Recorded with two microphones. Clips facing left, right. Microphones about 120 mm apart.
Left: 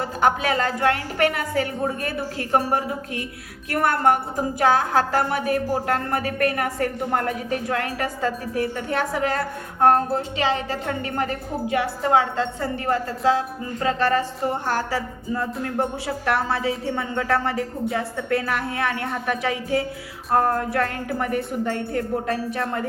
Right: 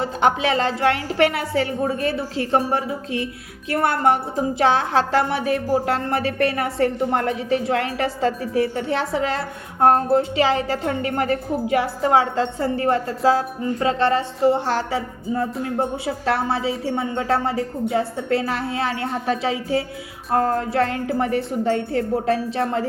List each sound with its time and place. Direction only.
0.0 s a woman's voice: 25° right (ahead or behind)